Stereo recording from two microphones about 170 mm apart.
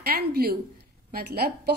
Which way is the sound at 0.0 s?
65° right (ahead or behind).